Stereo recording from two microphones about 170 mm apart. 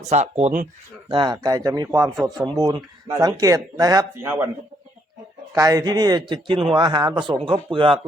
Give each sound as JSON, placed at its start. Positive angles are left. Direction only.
{"t": 0.0, "sound": "speech", "side_deg": -40}
{"t": 1.0, "sound": "speech", "side_deg": -25}
{"t": 5.5, "sound": "speech", "side_deg": -20}